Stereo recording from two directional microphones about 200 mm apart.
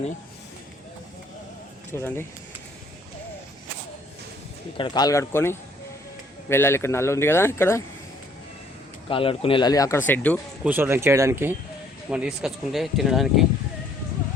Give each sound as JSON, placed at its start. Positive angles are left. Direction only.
{"t": 1.9, "sound": "a man's voice", "side_deg": 10}
{"t": 4.8, "sound": "a man's voice", "side_deg": 20}
{"t": 9.0, "sound": "speech", "side_deg": 25}
{"t": 10.1, "sound": "a man's voice", "side_deg": 5}
{"t": 10.6, "sound": "speech", "side_deg": -10}